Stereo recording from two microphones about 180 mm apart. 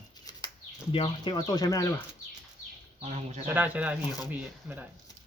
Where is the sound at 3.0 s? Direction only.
40° right (ahead or behind).